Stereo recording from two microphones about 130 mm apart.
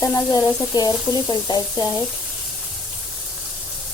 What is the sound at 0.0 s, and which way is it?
Sizzle, 20° left (ahead or behind).